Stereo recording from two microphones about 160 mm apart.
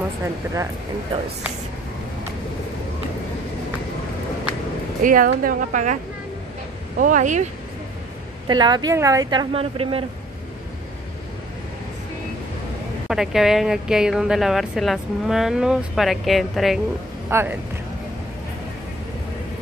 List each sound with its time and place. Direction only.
5.0 s a woman's voice: 60° right (ahead or behind)
7.0 s speech: 55° right (ahead or behind)
8.5 s a woman's voice: 25° right (ahead or behind)
13.1 s speech: centre (ahead or behind)
17.3 s speech: 15° right (ahead or behind)